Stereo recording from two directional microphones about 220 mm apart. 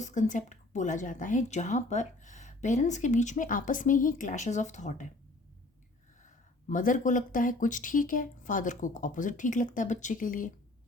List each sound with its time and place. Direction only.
0.0 s a woman's voice: 35° left (ahead or behind)
6.7 s a woman's voice: 35° left (ahead or behind)